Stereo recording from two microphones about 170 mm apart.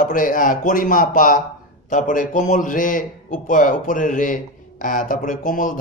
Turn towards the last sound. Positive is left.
turn(degrees=50)  # may be behind; listen again after turning